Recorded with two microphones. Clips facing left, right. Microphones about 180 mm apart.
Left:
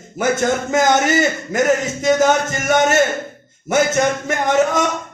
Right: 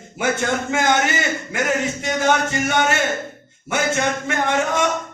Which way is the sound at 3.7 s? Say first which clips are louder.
Left 5 dB; 40° left (ahead or behind).